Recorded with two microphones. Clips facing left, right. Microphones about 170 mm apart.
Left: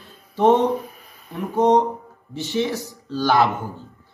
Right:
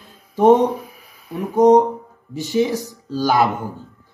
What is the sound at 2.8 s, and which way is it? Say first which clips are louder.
Speech: right 2 dB; 40° right (ahead or behind).